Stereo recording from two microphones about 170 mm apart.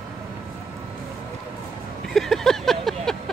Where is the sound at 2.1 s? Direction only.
Centre (ahead or behind).